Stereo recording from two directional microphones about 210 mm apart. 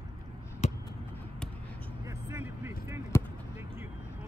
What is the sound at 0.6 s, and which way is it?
Basketball bounce, 30° left (ahead or behind).